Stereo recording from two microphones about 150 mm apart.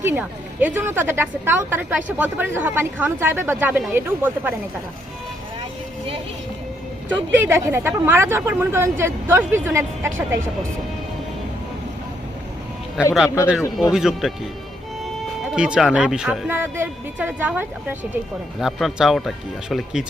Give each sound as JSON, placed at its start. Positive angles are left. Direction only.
{"t": 0.0, "sound": "a woman's voice", "side_deg": -15}
{"t": 7.1, "sound": "a woman's voice", "side_deg": -15}
{"t": 13.0, "sound": "a woman's voice", "side_deg": -5}
{"t": 15.5, "sound": "speech", "side_deg": -5}
{"t": 16.6, "sound": "a woman's voice", "side_deg": -15}
{"t": 18.6, "sound": "speech", "side_deg": 0}